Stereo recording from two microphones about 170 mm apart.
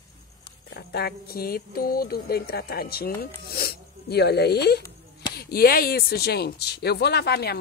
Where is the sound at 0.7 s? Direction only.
65° left (ahead or behind).